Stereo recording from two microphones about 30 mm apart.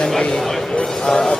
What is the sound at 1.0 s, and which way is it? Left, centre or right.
Speech, left.